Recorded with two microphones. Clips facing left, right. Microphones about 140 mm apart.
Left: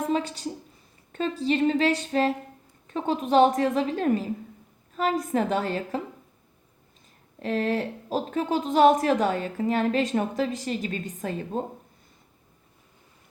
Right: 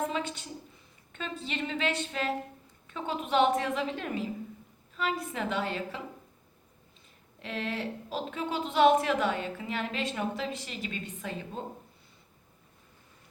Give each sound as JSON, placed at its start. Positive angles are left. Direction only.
{"t": 0.0, "sound": "a woman's voice", "side_deg": 40}
{"t": 7.3, "sound": "a woman's voice", "side_deg": 40}